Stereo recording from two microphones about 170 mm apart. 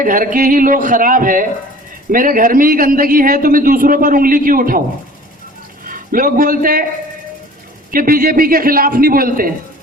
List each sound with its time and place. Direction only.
0.0 s a man's voice: 55° right (ahead or behind)
5.8 s a man's voice: 55° right (ahead or behind)
7.9 s a man's voice: 60° right (ahead or behind)